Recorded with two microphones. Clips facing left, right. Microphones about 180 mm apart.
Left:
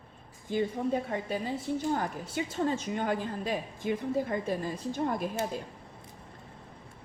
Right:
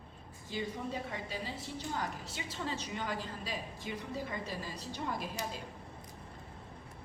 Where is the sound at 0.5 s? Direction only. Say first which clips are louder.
Left 9 dB; 50° left (ahead or behind).